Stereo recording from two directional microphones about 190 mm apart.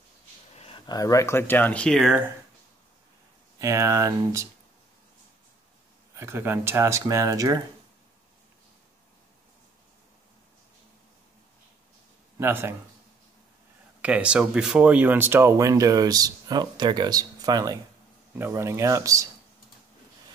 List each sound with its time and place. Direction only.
0.6 s speech: 30° left (ahead or behind); by 2.3 s 5° right (ahead or behind)
3.5 s speech: 15° right (ahead or behind)
6.1 s speech: 10° right (ahead or behind)
12.4 s speech: 10° right (ahead or behind)
14.0 s speech: 5° right (ahead or behind)